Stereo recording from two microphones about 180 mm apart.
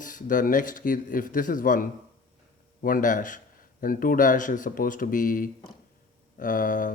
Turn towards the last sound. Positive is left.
turn(degrees=45)  # may be behind; listen again after turning